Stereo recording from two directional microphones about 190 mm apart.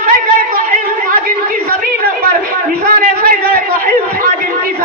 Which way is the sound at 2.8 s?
50° right (ahead or behind).